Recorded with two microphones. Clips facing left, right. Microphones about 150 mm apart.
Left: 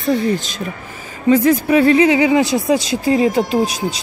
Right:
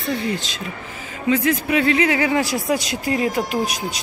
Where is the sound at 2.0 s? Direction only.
20° left (ahead or behind).